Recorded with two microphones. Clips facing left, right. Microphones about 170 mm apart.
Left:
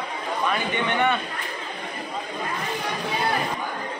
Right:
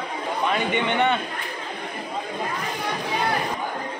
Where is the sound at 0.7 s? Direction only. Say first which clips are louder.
Right 1 dB; 20° right (ahead or behind).